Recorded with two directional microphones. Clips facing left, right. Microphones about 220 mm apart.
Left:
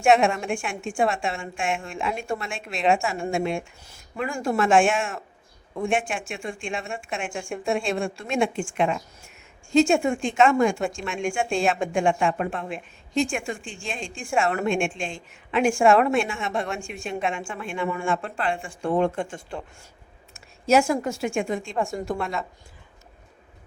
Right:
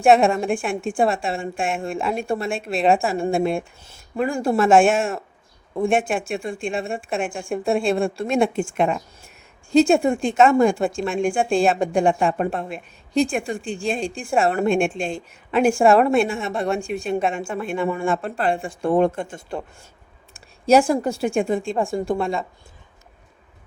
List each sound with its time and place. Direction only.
0.0 s a woman's voice: 35° right (ahead or behind)